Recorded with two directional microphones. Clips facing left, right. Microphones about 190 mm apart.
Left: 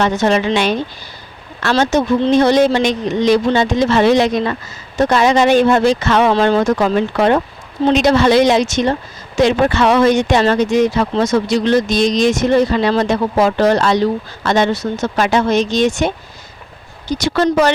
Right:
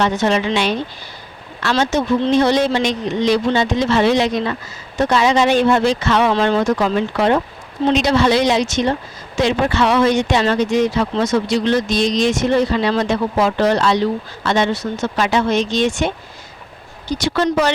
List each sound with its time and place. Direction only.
0.0 s speech: 50° left (ahead or behind)
17.2 s speech: 45° left (ahead or behind)